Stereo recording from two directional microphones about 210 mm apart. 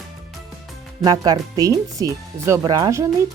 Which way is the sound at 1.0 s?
20° right (ahead or behind).